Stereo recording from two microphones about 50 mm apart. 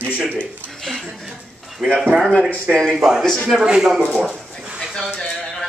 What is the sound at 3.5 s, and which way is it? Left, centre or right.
Speech, centre.